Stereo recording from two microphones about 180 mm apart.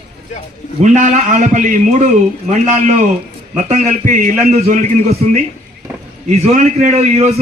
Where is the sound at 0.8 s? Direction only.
40° right (ahead or behind).